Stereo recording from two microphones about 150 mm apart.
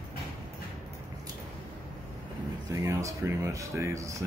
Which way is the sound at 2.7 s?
20° right (ahead or behind).